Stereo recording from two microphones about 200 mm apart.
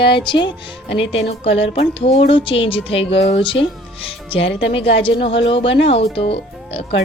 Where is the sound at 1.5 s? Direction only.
30° left (ahead or behind).